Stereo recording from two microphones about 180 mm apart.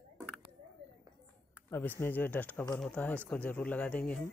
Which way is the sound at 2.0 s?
10° left (ahead or behind).